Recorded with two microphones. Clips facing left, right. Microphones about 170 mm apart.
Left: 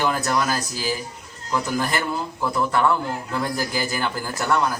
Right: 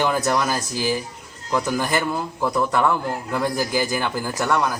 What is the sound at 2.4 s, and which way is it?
Speech, 15° right (ahead or behind).